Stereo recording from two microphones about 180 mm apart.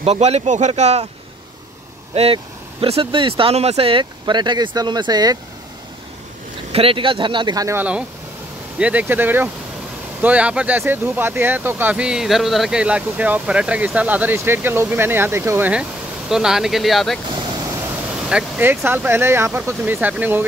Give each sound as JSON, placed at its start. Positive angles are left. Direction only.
{"t": 0.0, "sound": "speech", "side_deg": -35}
{"t": 2.1, "sound": "speech", "side_deg": -30}
{"t": 6.7, "sound": "speech", "side_deg": -30}
{"t": 18.3, "sound": "speech", "side_deg": -10}